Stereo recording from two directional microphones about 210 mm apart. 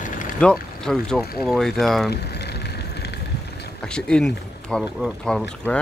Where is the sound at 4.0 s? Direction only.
5° left (ahead or behind).